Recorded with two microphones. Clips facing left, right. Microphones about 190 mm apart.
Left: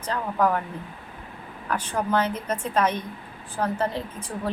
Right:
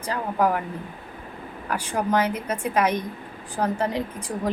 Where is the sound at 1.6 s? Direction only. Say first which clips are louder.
Right 1 dB; 10° right (ahead or behind).